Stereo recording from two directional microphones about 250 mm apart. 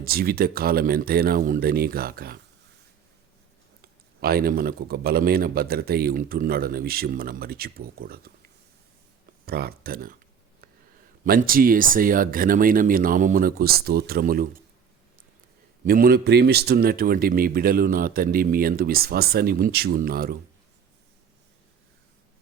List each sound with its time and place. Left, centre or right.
0.0 s a man's voice: right
3.8 s a man's voice: right
9.5 s a man's voice: right
11.3 s a man's voice: right
15.8 s a man's voice: right